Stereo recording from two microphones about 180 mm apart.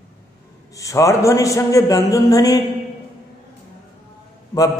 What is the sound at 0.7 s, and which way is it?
Speech, 20° left (ahead or behind).